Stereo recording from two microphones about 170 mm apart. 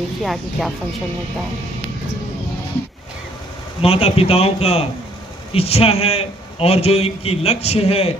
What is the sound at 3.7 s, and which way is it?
A man's voice, 35° left (ahead or behind).